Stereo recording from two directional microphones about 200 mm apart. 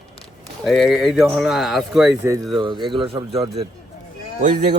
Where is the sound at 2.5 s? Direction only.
25° right (ahead or behind).